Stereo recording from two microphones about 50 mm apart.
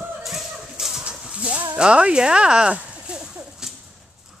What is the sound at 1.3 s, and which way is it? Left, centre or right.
Livestock, right.